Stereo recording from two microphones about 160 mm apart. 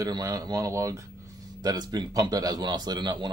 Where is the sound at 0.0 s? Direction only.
20° right (ahead or behind).